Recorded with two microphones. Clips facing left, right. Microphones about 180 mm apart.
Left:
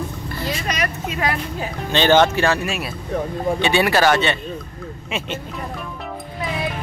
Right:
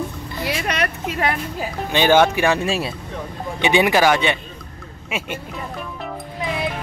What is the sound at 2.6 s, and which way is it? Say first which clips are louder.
Speech: right 3 dB; 30° right (ahead or behind).